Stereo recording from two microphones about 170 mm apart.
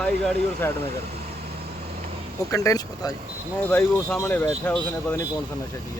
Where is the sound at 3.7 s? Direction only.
5° left (ahead or behind).